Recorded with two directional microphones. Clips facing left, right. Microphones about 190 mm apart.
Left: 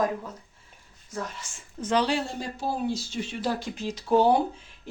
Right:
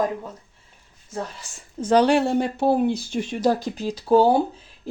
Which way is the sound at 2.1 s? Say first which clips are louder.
Right 10 dB; 65° right (ahead or behind).